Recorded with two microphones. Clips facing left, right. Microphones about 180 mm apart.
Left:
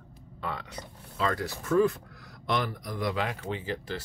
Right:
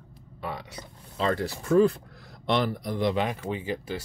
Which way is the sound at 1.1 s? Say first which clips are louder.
Right 3 dB; 30° right (ahead or behind).